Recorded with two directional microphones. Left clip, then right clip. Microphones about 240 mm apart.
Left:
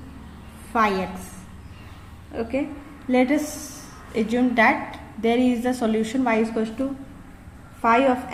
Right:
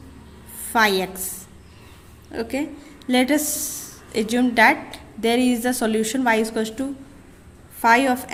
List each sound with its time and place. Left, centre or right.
0.7 s a woman's voice: right
2.3 s a woman's voice: right
7.8 s a woman's voice: right